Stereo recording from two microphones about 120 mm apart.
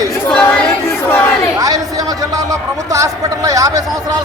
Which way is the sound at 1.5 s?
30° right (ahead or behind).